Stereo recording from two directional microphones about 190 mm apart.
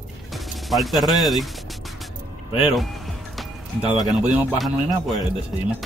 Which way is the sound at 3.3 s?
Centre (ahead or behind).